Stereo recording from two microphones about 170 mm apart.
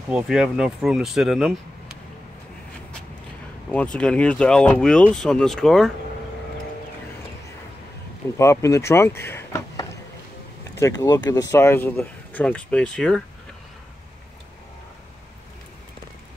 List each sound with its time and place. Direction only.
0.1 s speech: 5° right (ahead or behind)
3.7 s speech: 5° left (ahead or behind)
8.4 s speech: 15° left (ahead or behind)